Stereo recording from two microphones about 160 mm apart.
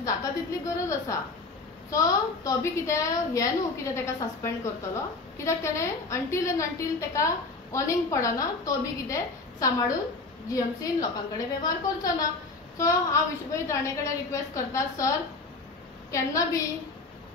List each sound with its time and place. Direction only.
0.0 s a sound: 20° left (ahead or behind)
1.9 s a woman's voice: 20° left (ahead or behind)
16.1 s a woman's voice: 20° left (ahead or behind)